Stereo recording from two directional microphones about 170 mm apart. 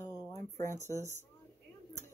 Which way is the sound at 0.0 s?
15° left (ahead or behind).